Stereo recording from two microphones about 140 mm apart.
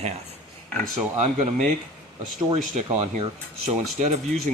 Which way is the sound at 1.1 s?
55° right (ahead or behind).